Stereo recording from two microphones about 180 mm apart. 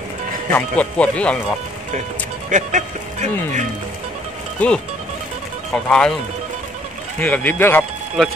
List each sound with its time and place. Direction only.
0.5 s speech: 10° left (ahead or behind)
2.5 s speech: 45° right (ahead or behind)
4.6 s speech: 5° left (ahead or behind)
5.9 s speech: 5° left (ahead or behind)
7.2 s speech: 10° left (ahead or behind)